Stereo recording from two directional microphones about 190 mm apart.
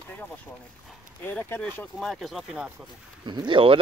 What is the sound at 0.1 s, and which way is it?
Speech, 10° left (ahead or behind).